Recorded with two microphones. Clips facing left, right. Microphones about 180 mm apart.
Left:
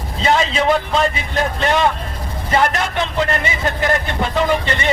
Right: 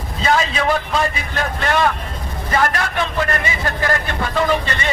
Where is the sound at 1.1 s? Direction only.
20° left (ahead or behind).